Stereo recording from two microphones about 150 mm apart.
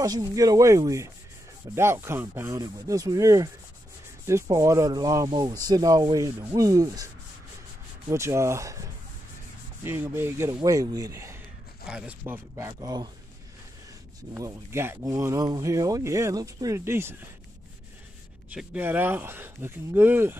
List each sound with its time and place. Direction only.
0.0 s speech: 25° right (ahead or behind)
8.1 s speech: 20° right (ahead or behind)
9.8 s speech: 15° right (ahead or behind)
11.8 s speech: 5° right (ahead or behind); by 13.1 s 25° right (ahead or behind)
14.3 s speech: 15° right (ahead or behind)
18.5 s speech: 10° right (ahead or behind)